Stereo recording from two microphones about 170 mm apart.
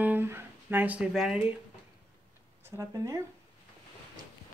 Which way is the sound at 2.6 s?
20° right (ahead or behind).